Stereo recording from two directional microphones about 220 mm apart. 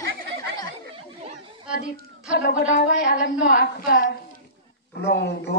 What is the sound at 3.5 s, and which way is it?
A woman's voice, 40° left (ahead or behind).